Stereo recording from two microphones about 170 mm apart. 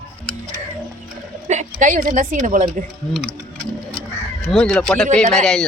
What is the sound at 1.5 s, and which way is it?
A woman's voice, 45° right (ahead or behind).